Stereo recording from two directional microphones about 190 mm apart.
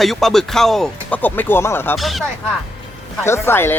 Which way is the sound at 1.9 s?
Centre (ahead or behind).